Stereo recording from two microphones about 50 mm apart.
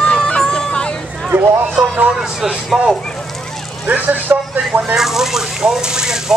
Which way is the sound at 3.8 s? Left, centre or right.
Right.